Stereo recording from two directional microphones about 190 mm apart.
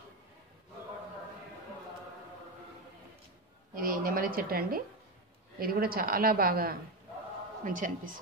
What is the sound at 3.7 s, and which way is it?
A woman's voice, 50° right (ahead or behind).